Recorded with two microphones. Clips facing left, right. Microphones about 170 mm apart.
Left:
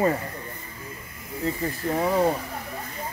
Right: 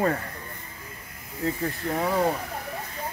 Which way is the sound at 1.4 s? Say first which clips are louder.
Left 1 dB; 5° left (ahead or behind).